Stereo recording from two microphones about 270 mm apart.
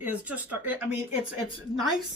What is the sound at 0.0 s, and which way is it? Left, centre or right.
Speech, centre.